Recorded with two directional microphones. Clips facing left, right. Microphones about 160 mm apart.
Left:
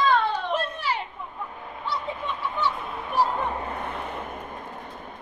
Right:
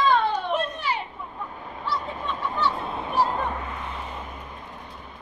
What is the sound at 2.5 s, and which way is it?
Fowl, 30° right (ahead or behind).